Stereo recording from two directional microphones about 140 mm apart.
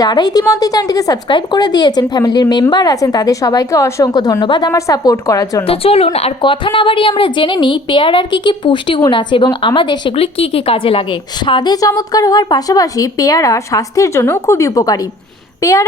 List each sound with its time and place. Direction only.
0.0 s a woman's voice: 30° left (ahead or behind)
5.6 s a woman's voice: 45° left (ahead or behind)
10.2 s a woman's voice: 45° left (ahead or behind); by 15.8 s 20° left (ahead or behind)